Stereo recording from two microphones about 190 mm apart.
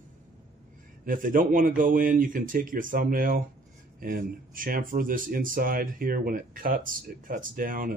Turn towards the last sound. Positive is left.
turn(degrees=-50)  # may be behind; listen again after turning